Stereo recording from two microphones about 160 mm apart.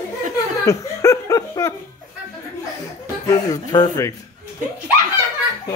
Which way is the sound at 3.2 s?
25° left (ahead or behind).